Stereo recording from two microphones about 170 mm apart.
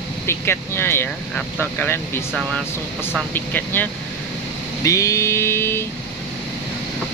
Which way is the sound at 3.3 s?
10° left (ahead or behind).